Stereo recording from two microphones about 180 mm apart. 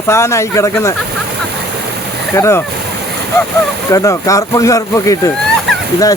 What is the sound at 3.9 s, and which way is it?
Speech, 15° left (ahead or behind).